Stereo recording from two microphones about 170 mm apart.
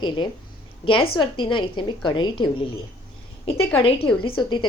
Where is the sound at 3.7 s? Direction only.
35° left (ahead or behind).